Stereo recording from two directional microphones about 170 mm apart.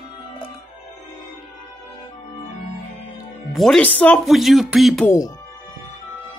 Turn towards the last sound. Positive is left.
turn(degrees=20)  # may be behind; listen again after turning